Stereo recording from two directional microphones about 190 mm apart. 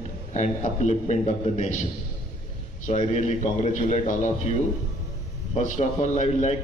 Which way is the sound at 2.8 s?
40° left (ahead or behind).